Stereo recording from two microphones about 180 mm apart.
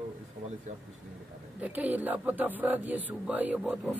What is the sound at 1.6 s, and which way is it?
Speech, 10° right (ahead or behind).